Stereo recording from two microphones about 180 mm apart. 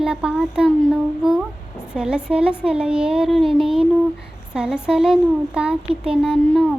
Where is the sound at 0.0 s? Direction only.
5° right (ahead or behind).